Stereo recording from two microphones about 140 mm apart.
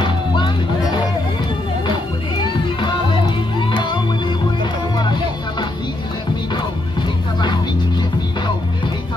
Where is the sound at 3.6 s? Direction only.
35° left (ahead or behind).